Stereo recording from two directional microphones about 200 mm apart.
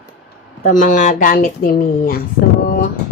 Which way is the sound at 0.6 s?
40° left (ahead or behind).